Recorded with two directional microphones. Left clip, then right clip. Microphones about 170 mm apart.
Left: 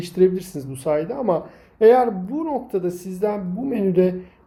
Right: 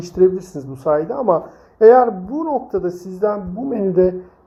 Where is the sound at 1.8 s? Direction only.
10° left (ahead or behind).